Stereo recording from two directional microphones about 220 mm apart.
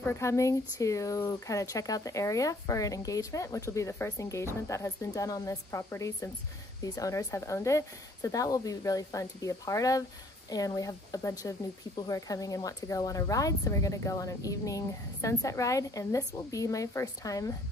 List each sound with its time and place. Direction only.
0.0 s speech: 10° left (ahead or behind)